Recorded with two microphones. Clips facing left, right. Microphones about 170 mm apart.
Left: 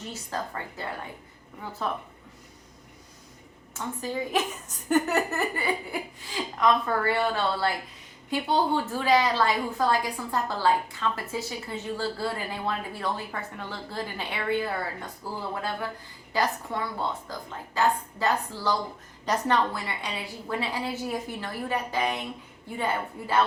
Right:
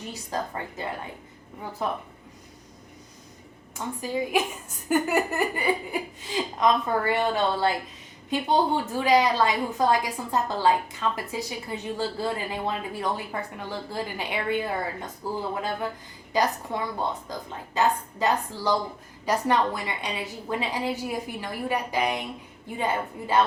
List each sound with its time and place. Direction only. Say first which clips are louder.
0.1 s a woman's voice: right 3 dB; 15° right (ahead or behind)
4.0 s a woman's voice: right 2 dB; 10° right (ahead or behind)
16.3 s a woman's voice: right 2 dB; 20° right (ahead or behind)